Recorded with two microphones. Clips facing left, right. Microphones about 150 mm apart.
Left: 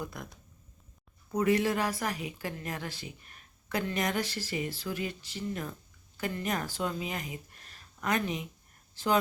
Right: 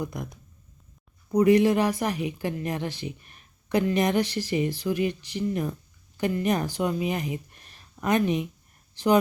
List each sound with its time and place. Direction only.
0.0 s speech: 15° right (ahead or behind)
1.3 s a woman's voice: 15° right (ahead or behind)